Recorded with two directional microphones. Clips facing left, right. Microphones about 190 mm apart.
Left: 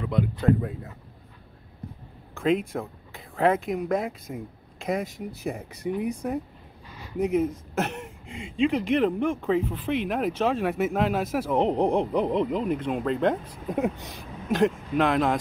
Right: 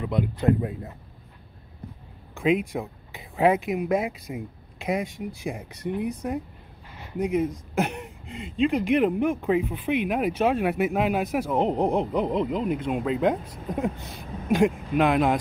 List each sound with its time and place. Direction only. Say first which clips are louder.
0.0 s speech: even; 15° right (ahead or behind)
2.3 s speech: right 1 dB; 5° right (ahead or behind)